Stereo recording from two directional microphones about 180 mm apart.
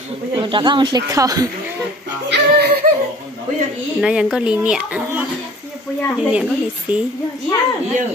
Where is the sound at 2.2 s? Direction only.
65° right (ahead or behind).